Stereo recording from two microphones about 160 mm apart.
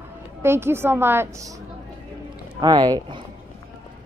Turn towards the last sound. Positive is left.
turn(degrees=-30)  # may be behind; listen again after turning